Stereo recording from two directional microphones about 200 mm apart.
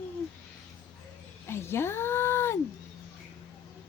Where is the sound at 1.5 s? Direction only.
10° left (ahead or behind).